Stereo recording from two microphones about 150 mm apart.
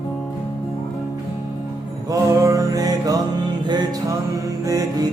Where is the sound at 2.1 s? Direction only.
20° right (ahead or behind).